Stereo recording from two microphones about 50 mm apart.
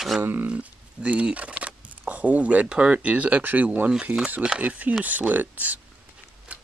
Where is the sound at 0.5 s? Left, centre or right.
Right.